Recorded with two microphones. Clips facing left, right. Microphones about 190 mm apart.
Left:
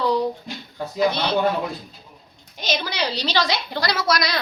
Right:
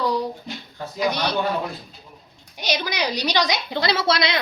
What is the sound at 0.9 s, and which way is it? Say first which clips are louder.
Speech: left 2 dB; 15° right (ahead or behind).